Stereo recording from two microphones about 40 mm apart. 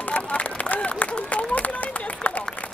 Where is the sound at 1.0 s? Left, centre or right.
Left.